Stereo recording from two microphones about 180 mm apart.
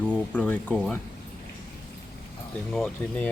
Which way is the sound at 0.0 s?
5° left (ahead or behind).